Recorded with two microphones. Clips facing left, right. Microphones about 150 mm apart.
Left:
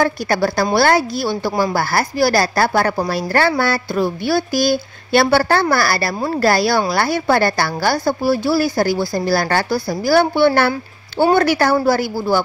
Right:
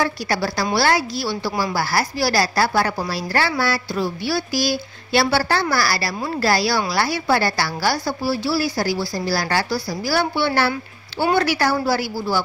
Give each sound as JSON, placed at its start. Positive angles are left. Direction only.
{"t": 0.0, "sound": "speech", "side_deg": 50}